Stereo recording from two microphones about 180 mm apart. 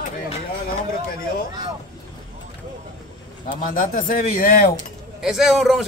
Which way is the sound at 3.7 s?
50° left (ahead or behind).